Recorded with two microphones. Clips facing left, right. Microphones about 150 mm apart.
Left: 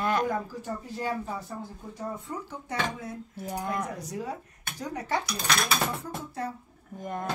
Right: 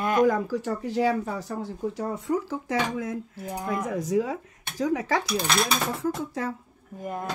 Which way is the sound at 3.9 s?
90° right.